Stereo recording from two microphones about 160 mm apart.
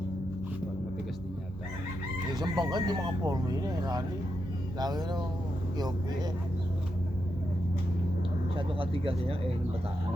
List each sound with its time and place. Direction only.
2.3 s speech: 25° right (ahead or behind)
8.5 s speech: 35° right (ahead or behind)